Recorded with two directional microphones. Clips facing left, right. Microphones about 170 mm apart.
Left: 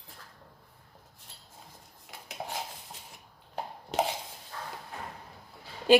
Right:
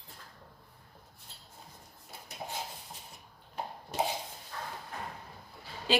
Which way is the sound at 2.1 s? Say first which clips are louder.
Left 1 dB; 90° left.